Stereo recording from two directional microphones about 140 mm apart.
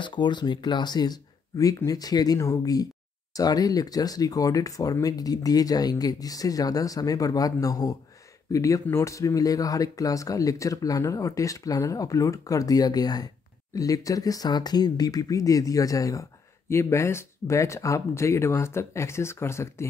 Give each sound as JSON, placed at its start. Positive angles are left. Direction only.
{"t": 0.0, "sound": "speech", "side_deg": 35}